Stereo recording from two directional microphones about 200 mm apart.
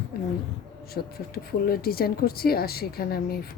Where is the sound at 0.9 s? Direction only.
50° left (ahead or behind).